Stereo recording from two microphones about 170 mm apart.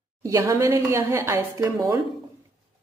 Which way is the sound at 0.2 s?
20° right (ahead or behind).